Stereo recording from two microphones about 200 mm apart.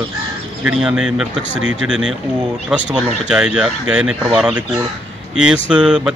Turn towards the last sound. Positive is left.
turn(degrees=-5)  # may be behind; listen again after turning